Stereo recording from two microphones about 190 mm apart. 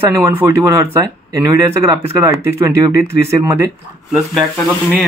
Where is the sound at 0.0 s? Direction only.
15° right (ahead or behind).